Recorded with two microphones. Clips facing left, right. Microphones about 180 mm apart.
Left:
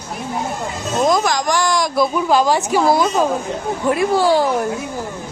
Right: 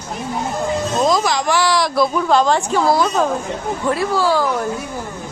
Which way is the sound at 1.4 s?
5° right (ahead or behind).